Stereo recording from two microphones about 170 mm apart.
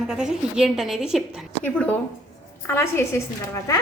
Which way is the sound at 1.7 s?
10° left (ahead or behind).